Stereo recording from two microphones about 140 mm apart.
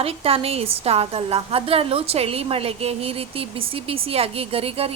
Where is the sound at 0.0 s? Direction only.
45° right (ahead or behind).